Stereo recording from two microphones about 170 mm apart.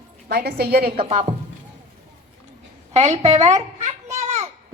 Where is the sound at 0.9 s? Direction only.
35° right (ahead or behind).